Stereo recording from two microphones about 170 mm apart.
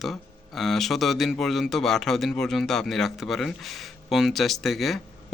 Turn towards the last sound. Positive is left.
turn(degrees=0)  # may be behind; listen again after turning